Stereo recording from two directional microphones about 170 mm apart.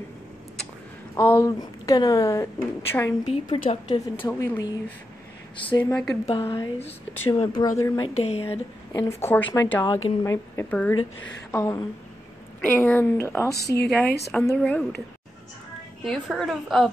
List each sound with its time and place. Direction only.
1.1 s a woman's voice: 15° left (ahead or behind)
3.5 s speech: 35° left (ahead or behind)
4.0 s speech: 15° left (ahead or behind)
5.6 s speech: 30° left (ahead or behind)
5.9 s speech: 10° left (ahead or behind)
6.2 s a woman's voice: 30° left (ahead or behind)
8.2 s speech: 35° left (ahead or behind)
8.9 s speech: 15° left (ahead or behind)
13.6 s a woman's voice: 75° left (ahead or behind)
13.8 s speech: 10° left (ahead or behind)
16.0 s a woman's voice: centre (ahead or behind)